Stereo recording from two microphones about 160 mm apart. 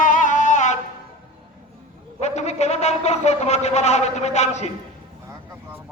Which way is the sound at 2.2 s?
45° left (ahead or behind).